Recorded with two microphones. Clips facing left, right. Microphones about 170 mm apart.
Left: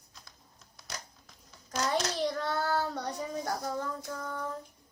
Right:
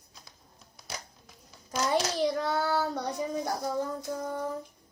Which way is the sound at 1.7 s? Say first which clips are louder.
Right 3 dB; 10° right (ahead or behind).